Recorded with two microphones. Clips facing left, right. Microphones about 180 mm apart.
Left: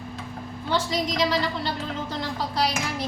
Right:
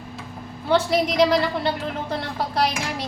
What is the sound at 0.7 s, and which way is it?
A woman's voice, 60° right (ahead or behind).